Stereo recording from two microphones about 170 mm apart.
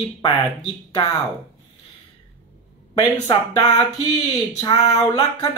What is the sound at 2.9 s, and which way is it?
Speech, 30° left (ahead or behind).